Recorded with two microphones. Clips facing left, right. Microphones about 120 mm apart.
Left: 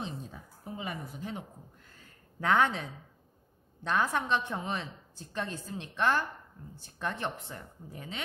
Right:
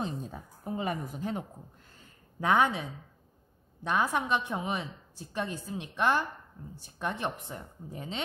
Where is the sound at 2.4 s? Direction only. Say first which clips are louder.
Right 1 dB; 10° right (ahead or behind).